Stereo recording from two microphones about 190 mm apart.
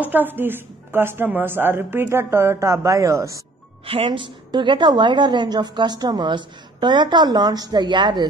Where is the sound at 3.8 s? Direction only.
25° right (ahead or behind).